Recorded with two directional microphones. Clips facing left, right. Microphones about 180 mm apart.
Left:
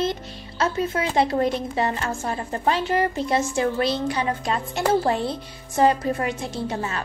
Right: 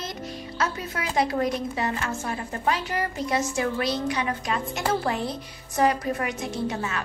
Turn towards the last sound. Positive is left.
turn(degrees=30)  # may be behind; listen again after turning